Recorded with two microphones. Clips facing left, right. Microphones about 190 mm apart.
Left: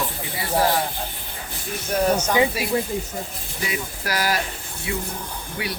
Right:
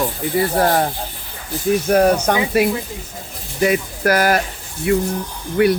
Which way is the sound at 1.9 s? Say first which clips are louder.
Right 5 dB; 60° right (ahead or behind).